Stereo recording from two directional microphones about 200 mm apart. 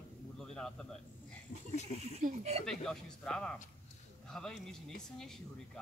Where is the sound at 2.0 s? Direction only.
35° right (ahead or behind).